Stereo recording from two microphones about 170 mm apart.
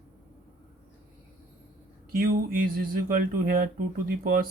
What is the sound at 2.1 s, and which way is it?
Speech, 60° right (ahead or behind).